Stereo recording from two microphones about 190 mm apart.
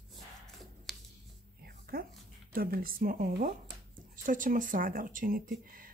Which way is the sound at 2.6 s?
50° right (ahead or behind).